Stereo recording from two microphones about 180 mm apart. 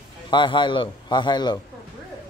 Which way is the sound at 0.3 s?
25° left (ahead or behind).